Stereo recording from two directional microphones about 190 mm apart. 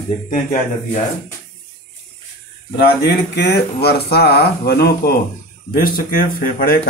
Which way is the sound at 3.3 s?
60° left (ahead or behind).